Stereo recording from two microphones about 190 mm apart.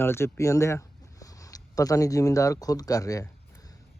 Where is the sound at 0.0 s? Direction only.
15° left (ahead or behind).